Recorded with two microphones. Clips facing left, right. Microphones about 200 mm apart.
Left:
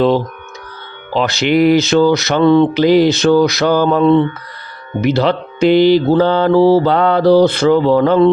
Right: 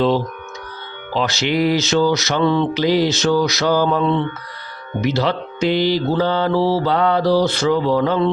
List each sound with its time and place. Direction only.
1.1 s speech: 55° left (ahead or behind)